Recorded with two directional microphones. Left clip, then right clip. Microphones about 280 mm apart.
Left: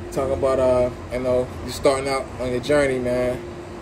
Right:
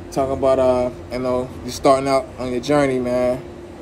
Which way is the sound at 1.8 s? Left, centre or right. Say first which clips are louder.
Right 5 dB; centre.